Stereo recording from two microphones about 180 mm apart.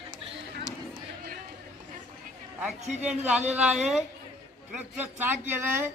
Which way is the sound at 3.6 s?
5° right (ahead or behind).